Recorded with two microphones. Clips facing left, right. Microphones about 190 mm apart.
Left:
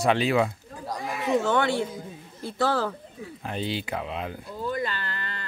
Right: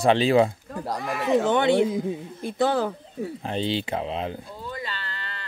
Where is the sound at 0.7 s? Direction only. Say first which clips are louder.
Right 4 dB; 65° right (ahead or behind).